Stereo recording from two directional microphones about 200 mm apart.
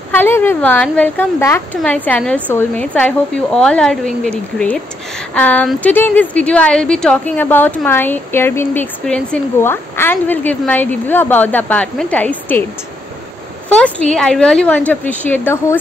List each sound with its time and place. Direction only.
0.1 s a woman's voice: 10° left (ahead or behind)
13.7 s a woman's voice: 5° left (ahead or behind)